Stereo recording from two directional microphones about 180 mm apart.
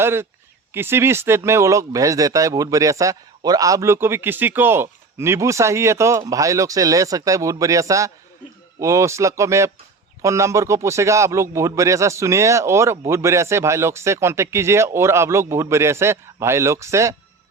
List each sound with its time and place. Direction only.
0.0 s speech: 15° right (ahead or behind)